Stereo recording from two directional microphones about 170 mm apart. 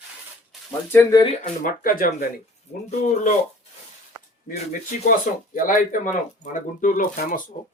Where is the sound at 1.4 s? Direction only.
50° left (ahead or behind).